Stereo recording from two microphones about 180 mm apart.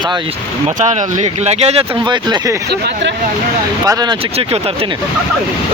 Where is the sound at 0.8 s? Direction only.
40° right (ahead or behind).